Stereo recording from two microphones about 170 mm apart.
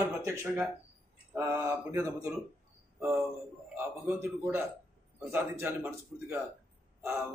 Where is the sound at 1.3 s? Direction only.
15° right (ahead or behind).